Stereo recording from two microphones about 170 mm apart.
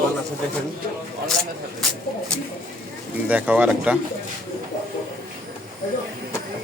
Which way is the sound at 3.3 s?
10° right (ahead or behind).